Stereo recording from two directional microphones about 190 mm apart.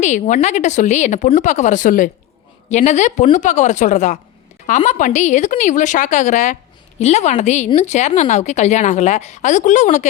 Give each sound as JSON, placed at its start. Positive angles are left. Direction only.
{"t": 0.0, "sound": "a woman's voice", "side_deg": 40}